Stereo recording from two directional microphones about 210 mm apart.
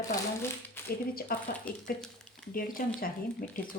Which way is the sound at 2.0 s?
Centre (ahead or behind).